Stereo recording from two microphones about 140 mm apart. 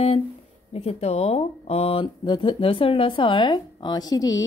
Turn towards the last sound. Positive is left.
turn(degrees=25)  # may be behind; listen again after turning